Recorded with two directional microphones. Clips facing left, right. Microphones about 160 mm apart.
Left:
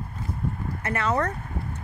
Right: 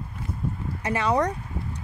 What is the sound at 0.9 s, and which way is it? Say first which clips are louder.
Speech: right 2 dB; 15° right (ahead or behind).